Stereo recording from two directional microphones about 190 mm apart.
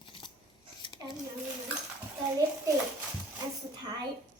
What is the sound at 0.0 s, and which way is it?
Scissors, 25° left (ahead or behind).